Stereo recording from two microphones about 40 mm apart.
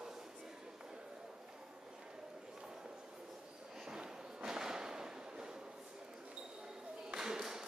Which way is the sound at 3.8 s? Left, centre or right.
Centre.